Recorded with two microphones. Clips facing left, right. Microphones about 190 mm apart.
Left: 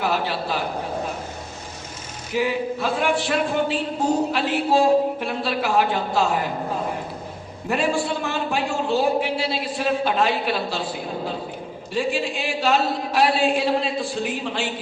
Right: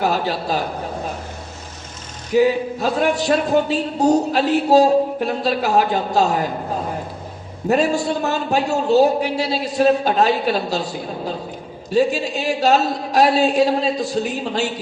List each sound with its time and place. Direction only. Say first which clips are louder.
0.0 s a man's voice: right 3 dB; 40° right (ahead or behind)
2.3 s speech: right 7 dB; 40° right (ahead or behind)
7.7 s speech: right 5 dB; 40° right (ahead or behind)